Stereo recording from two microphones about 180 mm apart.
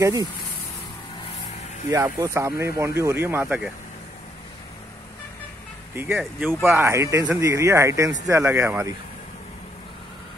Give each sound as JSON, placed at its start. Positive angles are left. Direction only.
{"t": 0.0, "sound": "speech", "side_deg": -20}
{"t": 1.9, "sound": "speech", "side_deg": -15}
{"t": 5.9, "sound": "speech", "side_deg": -5}